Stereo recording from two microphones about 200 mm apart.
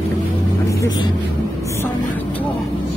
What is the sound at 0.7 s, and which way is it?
Vehicle, 20° left (ahead or behind).